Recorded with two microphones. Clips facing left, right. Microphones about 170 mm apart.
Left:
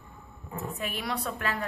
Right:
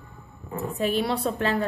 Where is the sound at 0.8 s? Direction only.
30° right (ahead or behind).